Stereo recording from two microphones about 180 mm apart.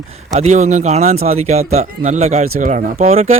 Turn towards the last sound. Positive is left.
turn(degrees=-35)  # may be behind; listen again after turning